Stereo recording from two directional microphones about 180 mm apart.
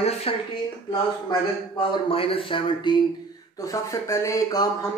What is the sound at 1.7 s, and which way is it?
A man's voice, 30° left (ahead or behind).